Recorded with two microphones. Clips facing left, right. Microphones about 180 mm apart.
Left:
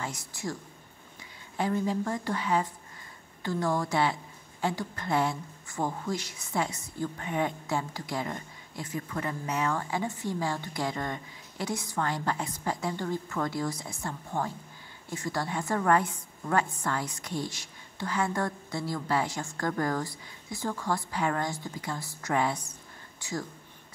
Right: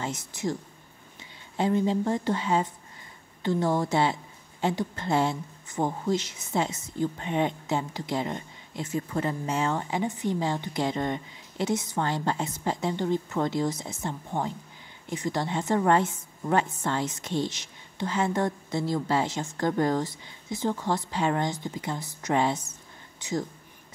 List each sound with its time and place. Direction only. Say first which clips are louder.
0.0 s a woman's voice: right 5 dB; 20° right (ahead or behind)
1.6 s a woman's voice: right 4 dB; 25° right (ahead or behind)